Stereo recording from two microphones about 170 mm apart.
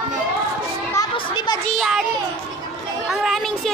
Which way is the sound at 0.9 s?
20° left (ahead or behind).